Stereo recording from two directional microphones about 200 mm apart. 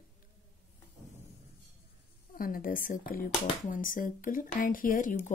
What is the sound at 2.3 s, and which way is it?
A woman's voice, 45° left (ahead or behind).